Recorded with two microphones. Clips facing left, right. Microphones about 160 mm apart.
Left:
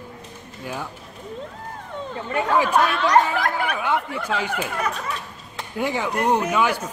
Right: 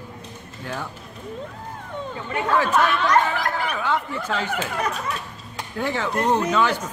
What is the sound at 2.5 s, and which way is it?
Speech, 15° left (ahead or behind).